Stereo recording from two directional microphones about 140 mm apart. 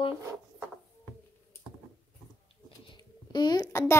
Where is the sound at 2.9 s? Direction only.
30° left (ahead or behind).